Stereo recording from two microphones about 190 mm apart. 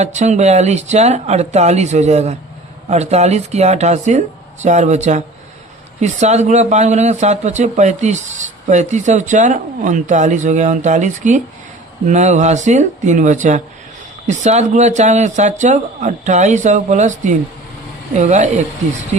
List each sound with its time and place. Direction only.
0.0 s speech: 40° right (ahead or behind)